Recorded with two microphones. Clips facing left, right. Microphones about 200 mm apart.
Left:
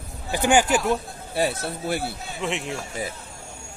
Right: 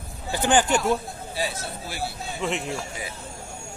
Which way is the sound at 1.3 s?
60° left (ahead or behind).